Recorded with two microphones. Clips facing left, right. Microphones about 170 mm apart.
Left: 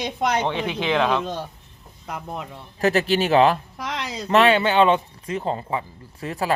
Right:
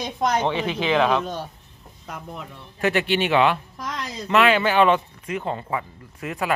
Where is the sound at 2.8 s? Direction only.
40° left (ahead or behind).